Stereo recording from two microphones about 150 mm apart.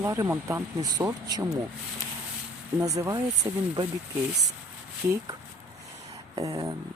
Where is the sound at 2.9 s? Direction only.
20° right (ahead or behind).